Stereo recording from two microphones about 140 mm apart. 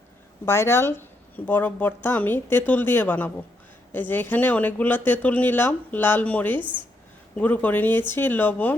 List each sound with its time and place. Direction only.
0.4 s speech: 20° left (ahead or behind)
6.6 s speech: 35° right (ahead or behind)
7.3 s speech: 10° left (ahead or behind)